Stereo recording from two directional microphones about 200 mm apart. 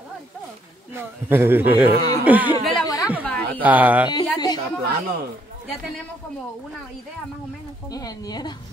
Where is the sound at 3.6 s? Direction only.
10° right (ahead or behind).